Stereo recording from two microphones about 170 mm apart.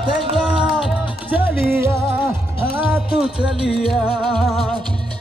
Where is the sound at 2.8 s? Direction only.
5° right (ahead or behind).